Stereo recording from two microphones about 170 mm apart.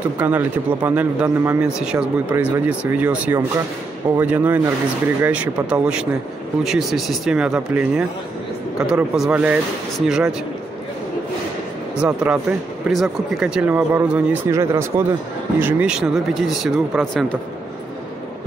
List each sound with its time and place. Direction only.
0.2 s speech: 10° right (ahead or behind)
12.0 s speech: 5° right (ahead or behind)
15.6 s speech: 5° right (ahead or behind)